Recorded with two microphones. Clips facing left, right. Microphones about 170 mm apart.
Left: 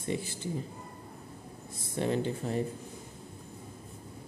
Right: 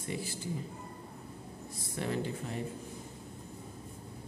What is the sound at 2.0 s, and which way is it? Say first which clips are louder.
Speech: left 5 dB; 25° left (ahead or behind).